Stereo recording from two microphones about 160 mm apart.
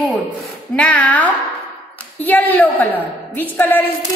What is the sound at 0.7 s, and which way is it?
A woman's voice, 5° left (ahead or behind).